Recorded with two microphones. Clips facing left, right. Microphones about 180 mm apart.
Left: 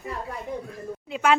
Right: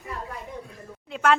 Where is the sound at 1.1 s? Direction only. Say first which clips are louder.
Even; 5° left (ahead or behind).